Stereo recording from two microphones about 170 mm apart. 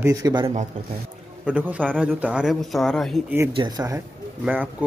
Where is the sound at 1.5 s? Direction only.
10° right (ahead or behind).